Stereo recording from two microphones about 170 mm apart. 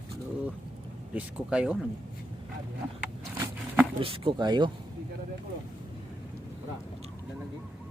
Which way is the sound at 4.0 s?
30° right (ahead or behind).